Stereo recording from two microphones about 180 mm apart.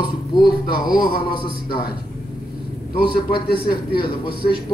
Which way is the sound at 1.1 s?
55° left (ahead or behind).